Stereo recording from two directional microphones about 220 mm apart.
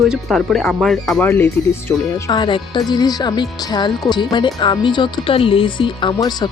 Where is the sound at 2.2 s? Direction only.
20° left (ahead or behind).